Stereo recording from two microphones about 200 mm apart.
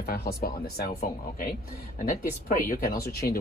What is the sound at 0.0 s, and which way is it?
Speech, 50° left (ahead or behind).